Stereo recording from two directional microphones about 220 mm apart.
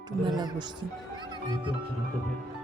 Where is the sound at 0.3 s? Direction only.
20° right (ahead or behind).